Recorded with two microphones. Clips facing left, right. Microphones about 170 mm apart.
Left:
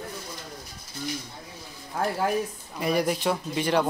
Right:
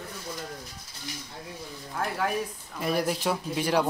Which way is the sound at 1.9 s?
30° left (ahead or behind).